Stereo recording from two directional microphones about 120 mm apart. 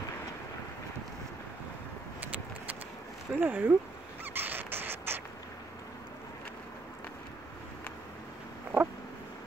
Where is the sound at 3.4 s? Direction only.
15° right (ahead or behind).